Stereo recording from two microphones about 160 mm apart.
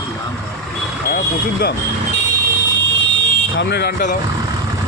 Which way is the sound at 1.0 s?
75° left (ahead or behind).